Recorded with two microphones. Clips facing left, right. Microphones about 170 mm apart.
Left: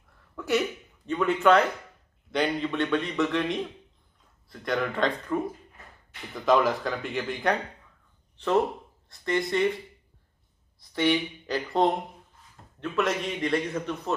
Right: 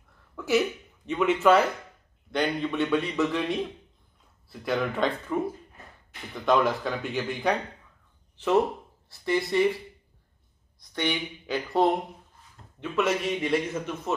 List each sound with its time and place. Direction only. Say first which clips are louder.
0.4 s a sound: right 2 dB; centre (ahead or behind)
1.1 s a man's voice: even; 5° right (ahead or behind)
9.1 s a man's voice: right 1 dB; 5° right (ahead or behind)
10.8 s a man's voice: left 5 dB; 5° left (ahead or behind)